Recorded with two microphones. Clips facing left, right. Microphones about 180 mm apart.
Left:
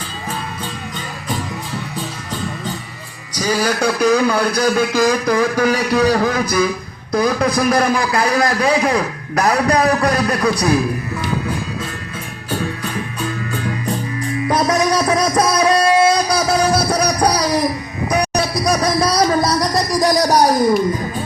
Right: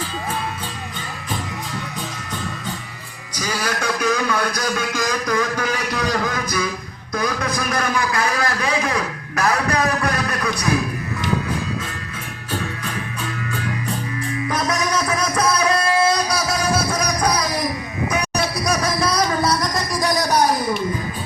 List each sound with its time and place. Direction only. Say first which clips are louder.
3.4 s a man's voice: left 7 dB; 35° left (ahead or behind)
14.4 s music: left 7 dB; 35° left (ahead or behind)